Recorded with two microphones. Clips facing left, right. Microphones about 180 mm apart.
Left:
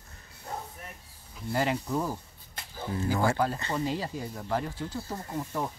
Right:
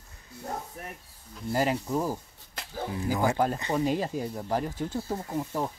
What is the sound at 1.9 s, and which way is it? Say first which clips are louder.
Speech: right 2 dB; 10° right (ahead or behind).